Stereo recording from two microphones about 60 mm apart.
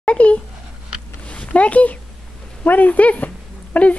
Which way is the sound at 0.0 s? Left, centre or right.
Left.